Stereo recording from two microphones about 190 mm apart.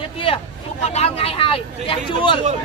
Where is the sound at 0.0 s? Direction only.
30° left (ahead or behind).